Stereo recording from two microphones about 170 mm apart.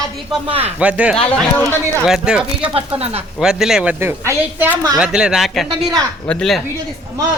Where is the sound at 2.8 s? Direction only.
35° right (ahead or behind).